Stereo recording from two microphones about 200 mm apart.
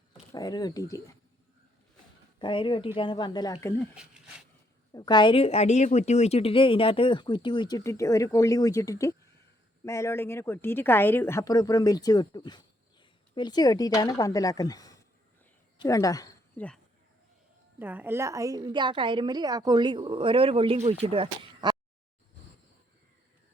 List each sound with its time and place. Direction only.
0.1 s speech: 20° left (ahead or behind)
2.4 s speech: 25° left (ahead or behind)
4.9 s a woman's voice: 20° left (ahead or behind)
16.6 s speech: 5° left (ahead or behind)
17.7 s a woman's voice: 10° right (ahead or behind); by 21.8 s 25° right (ahead or behind)